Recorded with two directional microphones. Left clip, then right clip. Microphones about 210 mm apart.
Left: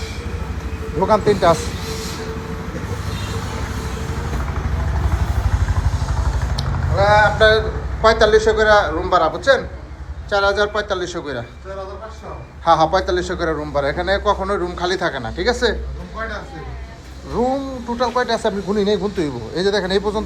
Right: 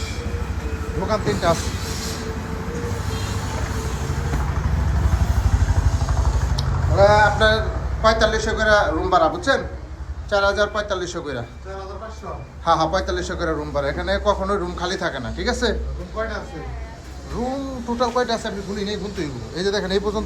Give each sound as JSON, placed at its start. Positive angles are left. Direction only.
{"t": 1.0, "sound": "a man's voice", "side_deg": -5}
{"t": 6.9, "sound": "a man's voice", "side_deg": -30}
{"t": 12.6, "sound": "a man's voice", "side_deg": -15}
{"t": 17.4, "sound": "a man's voice", "side_deg": -10}
{"t": 17.7, "sound": "speech", "side_deg": -20}
{"t": 18.4, "sound": "speech", "side_deg": 0}
{"t": 19.5, "sound": "a man's voice", "side_deg": -15}